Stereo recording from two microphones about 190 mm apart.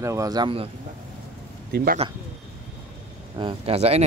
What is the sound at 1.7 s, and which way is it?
Speech, 55° right (ahead or behind).